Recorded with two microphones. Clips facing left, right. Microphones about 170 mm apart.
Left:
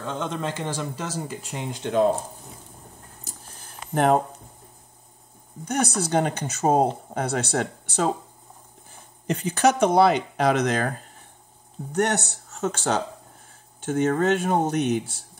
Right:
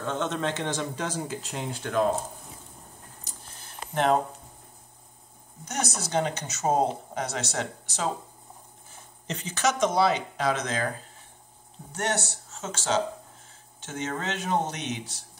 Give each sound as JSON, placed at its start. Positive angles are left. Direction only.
{"t": 0.0, "sound": "speech", "side_deg": 10}
{"t": 3.9, "sound": "speech", "side_deg": 50}
{"t": 5.7, "sound": "speech", "side_deg": 55}
{"t": 9.3, "sound": "speech", "side_deg": 55}
{"t": 11.9, "sound": "speech", "side_deg": 60}